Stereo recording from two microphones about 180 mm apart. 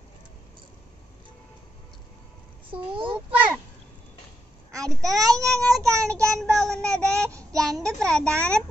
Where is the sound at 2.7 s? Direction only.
30° right (ahead or behind).